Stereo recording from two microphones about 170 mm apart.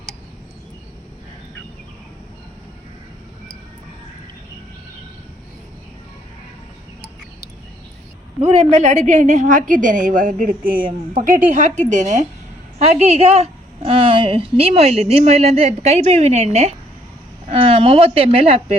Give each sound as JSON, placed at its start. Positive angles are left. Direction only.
{"t": 8.4, "sound": "a woman's voice", "side_deg": -40}